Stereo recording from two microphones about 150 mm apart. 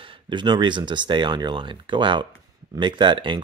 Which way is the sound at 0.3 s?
30° right (ahead or behind).